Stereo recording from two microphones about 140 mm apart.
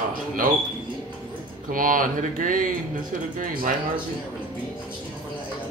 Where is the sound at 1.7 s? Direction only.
75° right (ahead or behind).